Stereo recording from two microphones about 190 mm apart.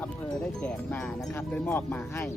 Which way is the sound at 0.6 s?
5° left (ahead or behind).